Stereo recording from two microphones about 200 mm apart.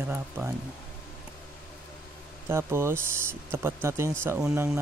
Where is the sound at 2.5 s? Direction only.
15° right (ahead or behind).